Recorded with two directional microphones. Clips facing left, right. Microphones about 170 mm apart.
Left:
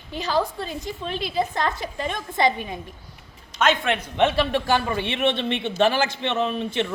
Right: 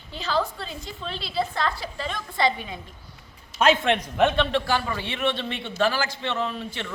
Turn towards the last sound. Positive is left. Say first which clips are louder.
# left 6 dB
turn(degrees=20)  # may be behind; listen again after turning